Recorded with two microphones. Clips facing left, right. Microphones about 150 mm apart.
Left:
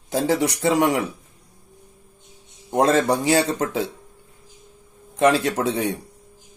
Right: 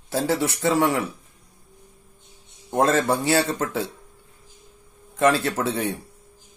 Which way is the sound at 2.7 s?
15° left (ahead or behind).